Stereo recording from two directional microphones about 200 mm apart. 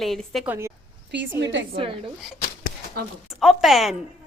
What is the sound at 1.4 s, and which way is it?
Speech, 65° right (ahead or behind).